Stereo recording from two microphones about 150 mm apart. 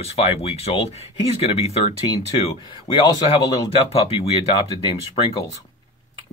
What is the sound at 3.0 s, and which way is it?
Speech, 25° left (ahead or behind).